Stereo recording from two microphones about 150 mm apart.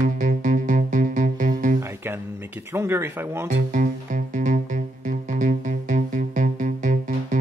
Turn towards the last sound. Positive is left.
turn(degrees=-60)  # may be behind; listen again after turning